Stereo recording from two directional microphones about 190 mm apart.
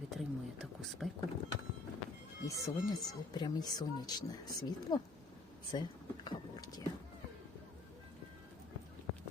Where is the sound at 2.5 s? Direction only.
20° left (ahead or behind).